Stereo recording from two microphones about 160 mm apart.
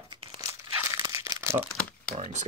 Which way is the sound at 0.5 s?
20° right (ahead or behind).